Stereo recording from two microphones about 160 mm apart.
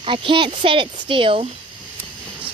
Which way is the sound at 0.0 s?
30° right (ahead or behind).